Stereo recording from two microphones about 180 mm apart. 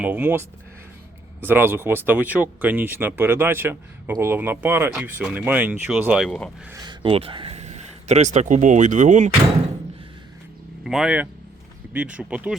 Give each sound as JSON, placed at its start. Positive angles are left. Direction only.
{"t": 0.0, "sound": "speech", "side_deg": -10}
{"t": 6.8, "sound": "speech", "side_deg": -30}
{"t": 10.8, "sound": "speech", "side_deg": -5}